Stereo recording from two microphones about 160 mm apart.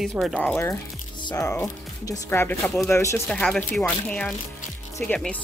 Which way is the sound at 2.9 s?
15° left (ahead or behind).